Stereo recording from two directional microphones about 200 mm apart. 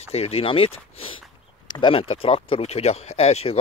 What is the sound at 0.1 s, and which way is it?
Speech, 30° left (ahead or behind).